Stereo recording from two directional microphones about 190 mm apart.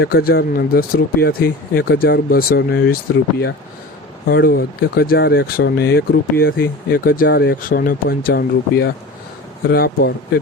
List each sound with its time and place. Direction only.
0.0 s speech: 55° left (ahead or behind)
4.3 s speech: 55° left (ahead or behind)